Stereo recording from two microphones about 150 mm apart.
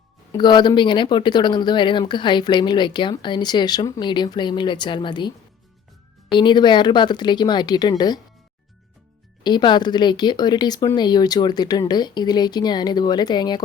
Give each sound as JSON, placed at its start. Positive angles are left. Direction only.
{"t": 0.3, "sound": "speech", "side_deg": 30}
{"t": 6.3, "sound": "speech", "side_deg": 30}
{"t": 9.4, "sound": "speech", "side_deg": 30}